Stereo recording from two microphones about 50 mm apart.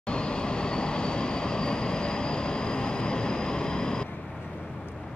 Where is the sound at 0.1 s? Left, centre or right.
Centre.